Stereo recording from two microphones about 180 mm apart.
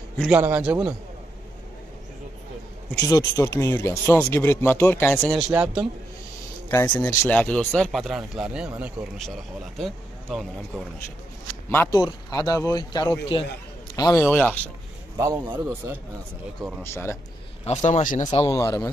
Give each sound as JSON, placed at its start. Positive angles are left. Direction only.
{"t": 0.3, "sound": "speech", "side_deg": -10}
{"t": 3.1, "sound": "speech", "side_deg": 20}
{"t": 5.5, "sound": "speech", "side_deg": -10}
{"t": 6.7, "sound": "speech", "side_deg": 15}
{"t": 11.7, "sound": "speech", "side_deg": 10}
{"t": 15.1, "sound": "speech", "side_deg": -15}
{"t": 16.8, "sound": "speech", "side_deg": 15}
{"t": 17.6, "sound": "speech", "side_deg": 40}
{"t": 18.3, "sound": "speech", "side_deg": 15}